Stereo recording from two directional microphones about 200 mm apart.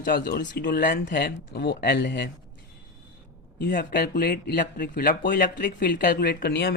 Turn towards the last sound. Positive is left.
turn(degrees=55)  # may be behind; listen again after turning